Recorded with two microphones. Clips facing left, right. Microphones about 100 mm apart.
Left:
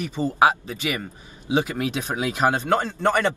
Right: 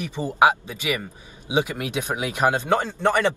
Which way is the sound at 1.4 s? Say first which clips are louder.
Left 1 dB; 15° right (ahead or behind).